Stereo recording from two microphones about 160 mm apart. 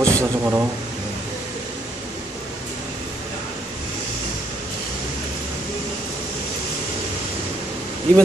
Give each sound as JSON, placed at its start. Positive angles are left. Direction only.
{"t": 0.0, "sound": "speech", "side_deg": -15}
{"t": 8.1, "sound": "speech", "side_deg": 10}